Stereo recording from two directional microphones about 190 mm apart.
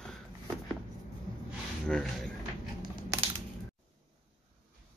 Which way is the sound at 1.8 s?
5° left (ahead or behind).